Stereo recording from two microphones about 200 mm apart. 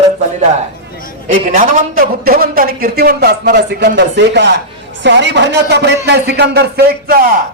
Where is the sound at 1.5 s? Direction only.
40° right (ahead or behind).